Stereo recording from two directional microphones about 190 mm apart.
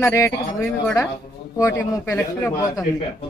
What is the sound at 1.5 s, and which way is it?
Speech, 15° left (ahead or behind).